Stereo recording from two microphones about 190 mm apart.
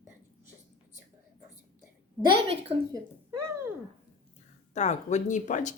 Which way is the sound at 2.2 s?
30° right (ahead or behind).